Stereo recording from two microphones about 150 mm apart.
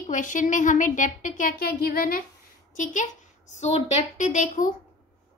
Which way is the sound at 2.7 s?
55° left (ahead or behind).